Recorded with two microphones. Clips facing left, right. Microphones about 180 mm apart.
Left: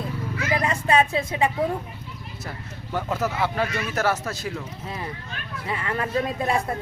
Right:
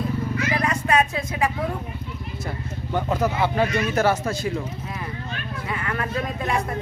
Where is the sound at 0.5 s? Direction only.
30° left (ahead or behind).